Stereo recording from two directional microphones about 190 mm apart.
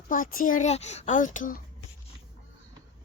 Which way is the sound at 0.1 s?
45° left (ahead or behind).